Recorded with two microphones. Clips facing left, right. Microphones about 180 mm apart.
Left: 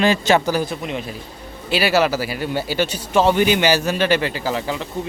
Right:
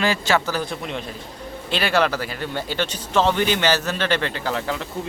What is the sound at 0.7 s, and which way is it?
A man's voice, 5° left (ahead or behind).